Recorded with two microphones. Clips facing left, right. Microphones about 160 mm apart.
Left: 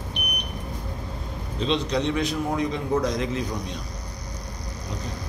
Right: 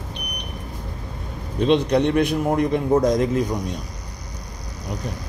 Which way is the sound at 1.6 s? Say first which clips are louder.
Right 7 dB; 55° right (ahead or behind).